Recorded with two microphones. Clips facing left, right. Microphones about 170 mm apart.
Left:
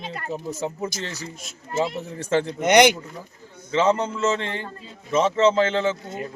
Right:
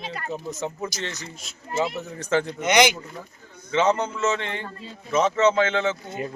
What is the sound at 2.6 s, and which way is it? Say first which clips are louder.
Speech: left 5 dB; 60° left (ahead or behind).